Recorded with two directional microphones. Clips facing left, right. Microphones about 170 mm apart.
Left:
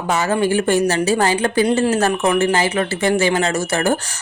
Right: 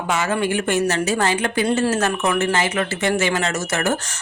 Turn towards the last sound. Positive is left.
turn(degrees=30)  # may be behind; listen again after turning